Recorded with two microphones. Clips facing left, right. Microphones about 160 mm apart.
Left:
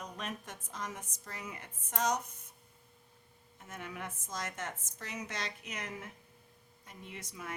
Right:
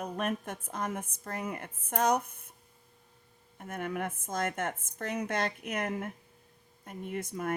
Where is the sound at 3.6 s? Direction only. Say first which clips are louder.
Right 9 dB; 55° right (ahead or behind).